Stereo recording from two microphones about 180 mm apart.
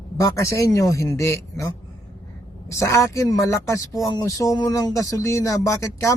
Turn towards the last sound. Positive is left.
turn(degrees=15)  # may be behind; listen again after turning